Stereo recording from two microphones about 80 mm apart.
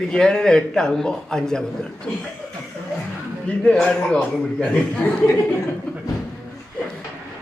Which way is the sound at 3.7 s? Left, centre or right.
Centre.